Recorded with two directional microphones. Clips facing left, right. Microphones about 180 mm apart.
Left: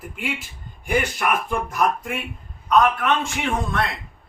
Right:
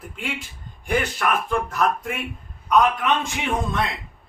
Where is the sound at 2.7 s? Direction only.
15° right (ahead or behind).